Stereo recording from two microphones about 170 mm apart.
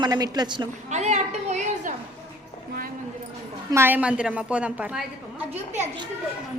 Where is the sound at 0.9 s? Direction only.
40° right (ahead or behind).